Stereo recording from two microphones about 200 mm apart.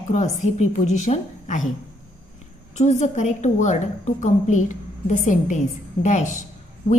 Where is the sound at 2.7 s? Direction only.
35° left (ahead or behind).